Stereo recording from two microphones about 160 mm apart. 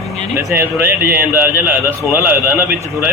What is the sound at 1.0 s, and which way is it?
A man's voice, 10° right (ahead or behind).